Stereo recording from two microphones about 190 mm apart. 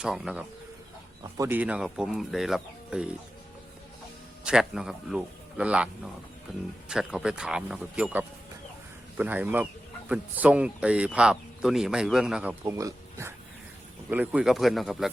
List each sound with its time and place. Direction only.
0.0 s speech: 5° right (ahead or behind)
4.4 s speech: 5° right (ahead or behind)